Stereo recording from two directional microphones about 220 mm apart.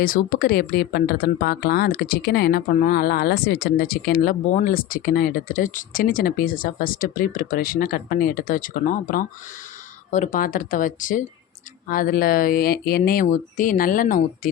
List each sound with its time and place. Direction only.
0.0 s speech: 40° left (ahead or behind)